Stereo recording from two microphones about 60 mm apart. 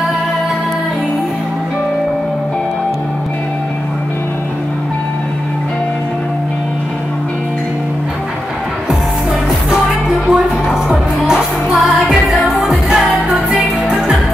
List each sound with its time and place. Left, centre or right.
10.2 s music: centre
13.1 s music: right